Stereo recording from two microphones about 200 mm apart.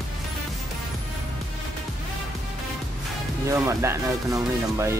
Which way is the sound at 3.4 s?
15° right (ahead or behind).